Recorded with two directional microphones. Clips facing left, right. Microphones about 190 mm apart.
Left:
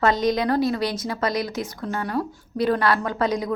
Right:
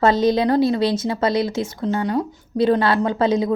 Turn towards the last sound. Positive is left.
turn(degrees=-25)  # may be behind; listen again after turning